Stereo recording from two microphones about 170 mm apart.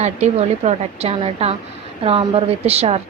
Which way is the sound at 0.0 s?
40° right (ahead or behind).